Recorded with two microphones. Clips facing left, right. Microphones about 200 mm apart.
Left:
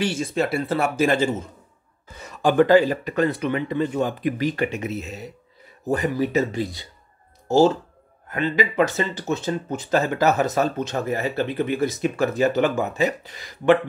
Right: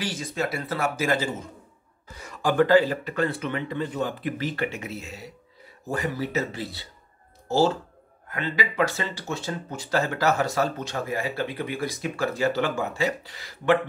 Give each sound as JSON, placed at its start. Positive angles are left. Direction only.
{"t": 0.0, "sound": "speech", "side_deg": 25}